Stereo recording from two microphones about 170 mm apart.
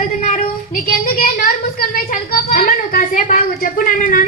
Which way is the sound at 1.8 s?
60° left (ahead or behind).